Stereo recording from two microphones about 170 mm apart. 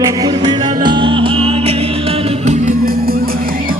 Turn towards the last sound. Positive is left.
turn(degrees=-60)  # may be behind; listen again after turning